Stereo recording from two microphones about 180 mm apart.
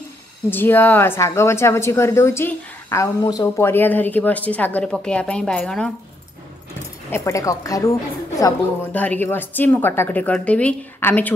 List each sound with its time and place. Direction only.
0.5 s a woman's voice: 10° left (ahead or behind)
7.1 s a woman's voice: 15° left (ahead or behind)
8.9 s a woman's voice: 10° left (ahead or behind)